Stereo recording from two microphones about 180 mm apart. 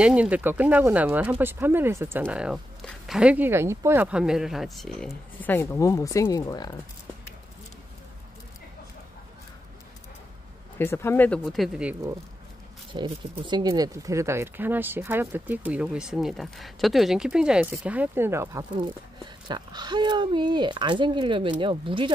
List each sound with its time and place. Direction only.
0.0 s speech: 5° right (ahead or behind)
5.5 s speech: 15° left (ahead or behind)
10.8 s speech: 15° left (ahead or behind); by 11.9 s centre (ahead or behind)
12.9 s speech: 25° right (ahead or behind)